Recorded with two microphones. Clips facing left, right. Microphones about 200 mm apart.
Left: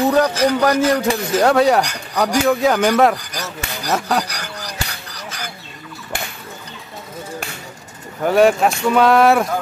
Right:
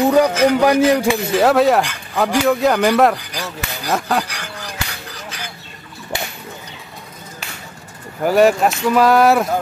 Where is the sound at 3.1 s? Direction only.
45° left (ahead or behind).